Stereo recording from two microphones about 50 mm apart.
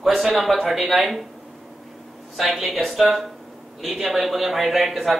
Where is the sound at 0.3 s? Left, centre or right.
Centre.